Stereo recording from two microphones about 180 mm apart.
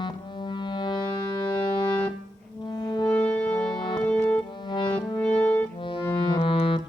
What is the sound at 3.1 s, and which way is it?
Music, 5° left (ahead or behind).